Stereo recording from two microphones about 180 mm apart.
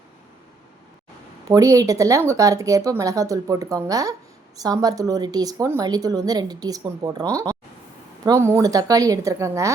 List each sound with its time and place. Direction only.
1.5 s a woman's voice: 20° right (ahead or behind)